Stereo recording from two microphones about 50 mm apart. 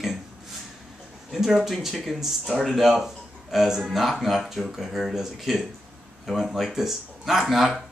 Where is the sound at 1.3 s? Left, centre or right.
Centre.